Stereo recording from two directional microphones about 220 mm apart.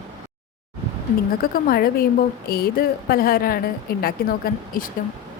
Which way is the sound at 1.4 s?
40° left (ahead or behind).